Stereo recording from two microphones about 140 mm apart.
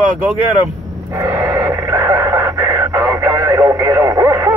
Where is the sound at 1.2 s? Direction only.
15° right (ahead or behind).